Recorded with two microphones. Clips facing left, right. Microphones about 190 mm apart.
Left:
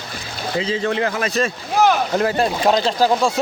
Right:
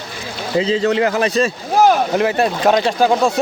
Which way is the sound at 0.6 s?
30° right (ahead or behind).